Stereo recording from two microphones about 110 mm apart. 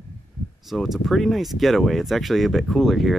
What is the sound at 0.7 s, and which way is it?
Speech, centre (ahead or behind).